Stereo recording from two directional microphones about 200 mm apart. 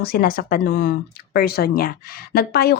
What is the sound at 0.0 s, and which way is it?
Speech, 50° left (ahead or behind).